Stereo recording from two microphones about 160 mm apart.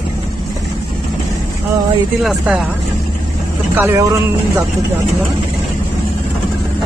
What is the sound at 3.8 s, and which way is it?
Speech, 15° right (ahead or behind).